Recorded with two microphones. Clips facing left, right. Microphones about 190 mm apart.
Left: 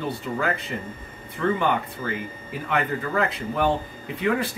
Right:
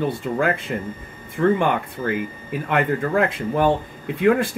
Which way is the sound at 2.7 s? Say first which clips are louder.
Right 5 dB; 50° right (ahead or behind).